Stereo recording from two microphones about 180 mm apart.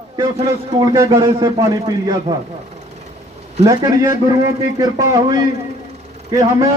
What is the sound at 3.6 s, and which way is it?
A man's voice, 20° right (ahead or behind).